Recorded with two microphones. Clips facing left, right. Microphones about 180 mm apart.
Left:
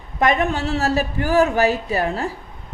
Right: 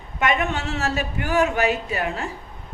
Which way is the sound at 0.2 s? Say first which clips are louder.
Left 4 dB; 35° left (ahead or behind).